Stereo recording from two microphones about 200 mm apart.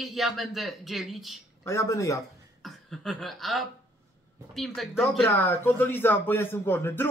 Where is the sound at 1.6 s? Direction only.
15° left (ahead or behind).